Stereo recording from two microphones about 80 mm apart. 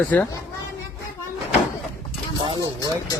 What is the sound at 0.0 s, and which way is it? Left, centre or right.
Speech, left.